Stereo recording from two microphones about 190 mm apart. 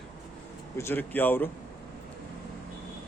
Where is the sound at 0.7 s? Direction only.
10° left (ahead or behind).